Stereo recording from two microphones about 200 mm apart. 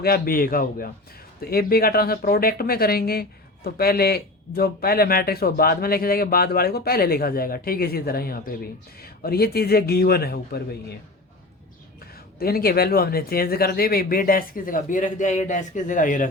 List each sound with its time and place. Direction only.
0.0 s speech: 50° left (ahead or behind)
12.4 s speech: 50° left (ahead or behind)